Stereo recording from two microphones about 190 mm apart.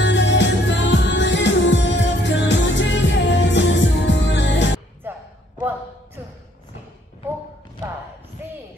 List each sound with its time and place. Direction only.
0.0 s music: 70° left (ahead or behind)
5.1 s a sound: 10° right (ahead or behind)
8.4 s bow-wow: 10° right (ahead or behind)